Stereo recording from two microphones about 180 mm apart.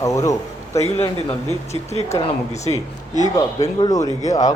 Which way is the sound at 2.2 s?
40° left (ahead or behind).